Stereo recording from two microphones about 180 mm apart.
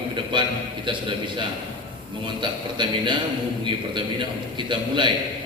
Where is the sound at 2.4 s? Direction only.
25° right (ahead or behind).